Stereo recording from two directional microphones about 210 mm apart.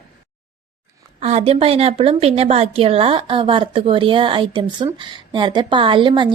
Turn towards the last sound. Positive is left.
turn(degrees=-25)  # may be behind; listen again after turning